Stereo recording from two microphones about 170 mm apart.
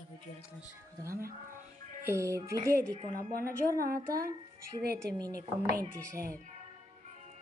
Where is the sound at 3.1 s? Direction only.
55° right (ahead or behind).